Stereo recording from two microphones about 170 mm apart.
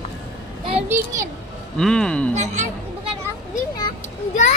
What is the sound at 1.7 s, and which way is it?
Speech, 5° left (ahead or behind).